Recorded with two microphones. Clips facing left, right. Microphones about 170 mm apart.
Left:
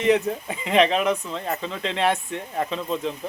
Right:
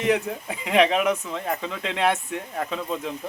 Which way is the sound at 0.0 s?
5° right (ahead or behind).